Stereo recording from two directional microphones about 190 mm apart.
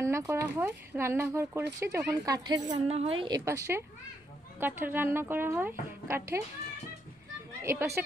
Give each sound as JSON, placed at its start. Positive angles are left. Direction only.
{"t": 0.0, "sound": "a woman's voice", "side_deg": -15}
{"t": 7.6, "sound": "a woman's voice", "side_deg": -15}